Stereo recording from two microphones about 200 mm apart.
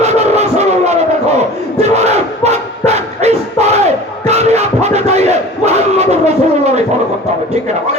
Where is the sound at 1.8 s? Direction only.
35° right (ahead or behind).